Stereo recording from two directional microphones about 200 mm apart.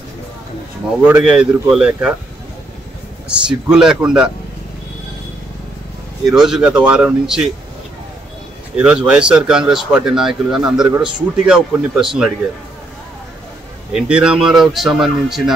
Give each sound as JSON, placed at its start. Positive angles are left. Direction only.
{"t": 1.0, "sound": "speech", "side_deg": -5}
{"t": 3.3, "sound": "speech", "side_deg": -5}
{"t": 6.2, "sound": "speech", "side_deg": 0}
{"t": 8.7, "sound": "speech", "side_deg": -5}
{"t": 13.9, "sound": "speech", "side_deg": -5}